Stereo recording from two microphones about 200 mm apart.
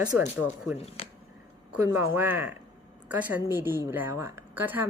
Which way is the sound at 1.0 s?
30° left (ahead or behind).